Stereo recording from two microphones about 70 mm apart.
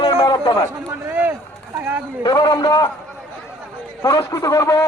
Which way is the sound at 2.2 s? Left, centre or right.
Left.